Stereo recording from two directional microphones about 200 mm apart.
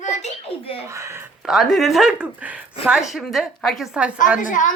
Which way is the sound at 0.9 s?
15° right (ahead or behind).